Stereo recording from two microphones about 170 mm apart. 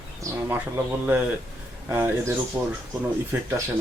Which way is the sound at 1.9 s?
15° right (ahead or behind).